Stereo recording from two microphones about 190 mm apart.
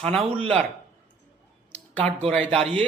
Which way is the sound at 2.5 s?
30° right (ahead or behind).